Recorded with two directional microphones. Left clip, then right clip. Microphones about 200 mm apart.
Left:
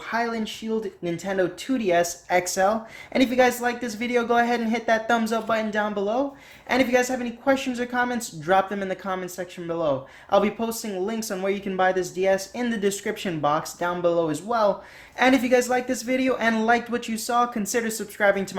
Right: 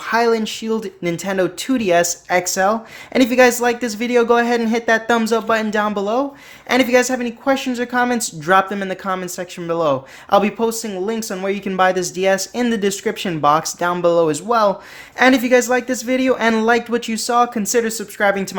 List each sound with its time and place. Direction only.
0.0 s speech: 30° right (ahead or behind)